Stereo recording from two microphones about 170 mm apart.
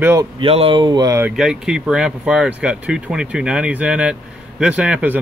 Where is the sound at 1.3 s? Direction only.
Centre (ahead or behind).